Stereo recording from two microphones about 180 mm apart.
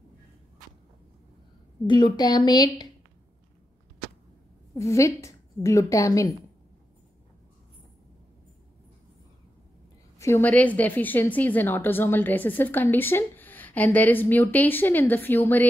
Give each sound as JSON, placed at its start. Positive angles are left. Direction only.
{"t": 1.9, "sound": "speech", "side_deg": 25}
{"t": 4.7, "sound": "a woman's voice", "side_deg": 15}
{"t": 10.1, "sound": "a woman's voice", "side_deg": 15}